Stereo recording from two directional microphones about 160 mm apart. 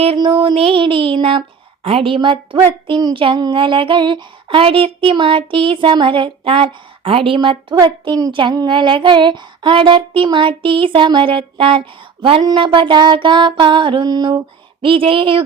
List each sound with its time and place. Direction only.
0.0 s child singing: 35° right (ahead or behind)